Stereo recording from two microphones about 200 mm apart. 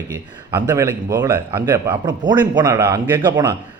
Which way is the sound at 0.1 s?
15° right (ahead or behind).